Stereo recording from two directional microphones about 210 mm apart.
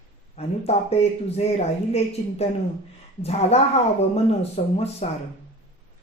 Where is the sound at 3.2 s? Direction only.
30° left (ahead or behind).